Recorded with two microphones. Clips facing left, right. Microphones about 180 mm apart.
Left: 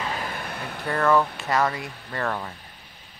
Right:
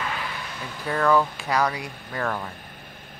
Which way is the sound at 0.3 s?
55° left (ahead or behind).